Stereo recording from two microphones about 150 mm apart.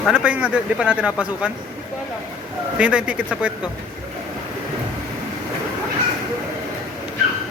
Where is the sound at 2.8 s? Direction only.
5° right (ahead or behind).